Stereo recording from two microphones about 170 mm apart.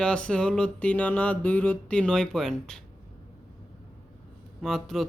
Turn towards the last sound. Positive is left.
turn(degrees=0)  # may be behind; listen again after turning